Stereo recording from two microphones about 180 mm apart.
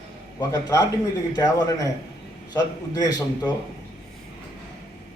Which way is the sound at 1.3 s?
20° left (ahead or behind).